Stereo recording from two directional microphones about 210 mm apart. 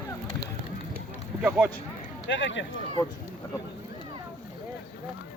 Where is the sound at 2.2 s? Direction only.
60° left (ahead or behind).